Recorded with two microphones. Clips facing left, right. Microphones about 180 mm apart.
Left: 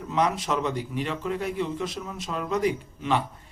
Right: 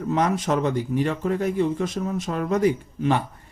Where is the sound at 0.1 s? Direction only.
50° right (ahead or behind).